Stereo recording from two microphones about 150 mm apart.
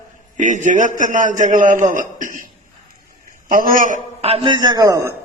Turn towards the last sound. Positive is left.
turn(degrees=-25)  # may be behind; listen again after turning